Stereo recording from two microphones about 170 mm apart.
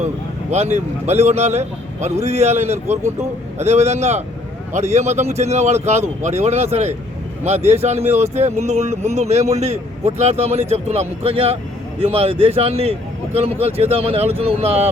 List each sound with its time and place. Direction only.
0.5 s a man's voice: 40° right (ahead or behind)